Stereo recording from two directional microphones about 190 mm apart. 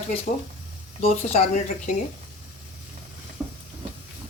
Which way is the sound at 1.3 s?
40° left (ahead or behind).